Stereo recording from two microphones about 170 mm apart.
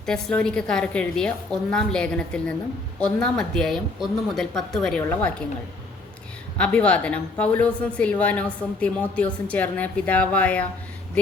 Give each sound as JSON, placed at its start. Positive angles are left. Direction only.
{"t": 0.0, "sound": "a woman's voice", "side_deg": 5}
{"t": 6.6, "sound": "a woman's voice", "side_deg": 5}